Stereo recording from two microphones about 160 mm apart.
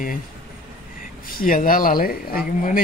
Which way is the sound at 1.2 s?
60° left (ahead or behind).